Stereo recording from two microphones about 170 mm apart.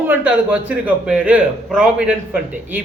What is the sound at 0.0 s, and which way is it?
Speech, 10° right (ahead or behind).